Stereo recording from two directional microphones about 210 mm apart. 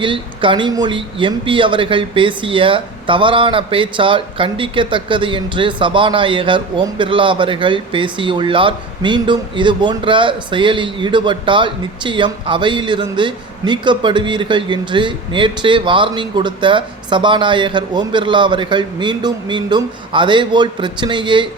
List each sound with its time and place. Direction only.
0.0 s speech: 25° right (ahead or behind)